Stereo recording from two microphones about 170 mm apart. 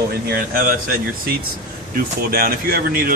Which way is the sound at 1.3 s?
65° right (ahead or behind).